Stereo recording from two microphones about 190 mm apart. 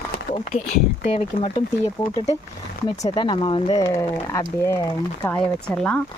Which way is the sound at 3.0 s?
25° left (ahead or behind).